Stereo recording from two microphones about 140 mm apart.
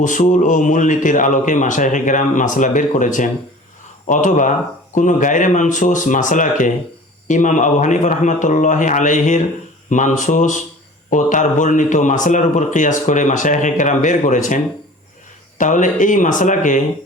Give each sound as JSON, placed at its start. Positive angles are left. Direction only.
{"t": 0.0, "sound": "a man's voice", "side_deg": 65}